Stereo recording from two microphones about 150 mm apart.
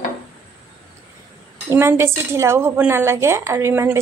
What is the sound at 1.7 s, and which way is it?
A woman's voice, 15° right (ahead or behind).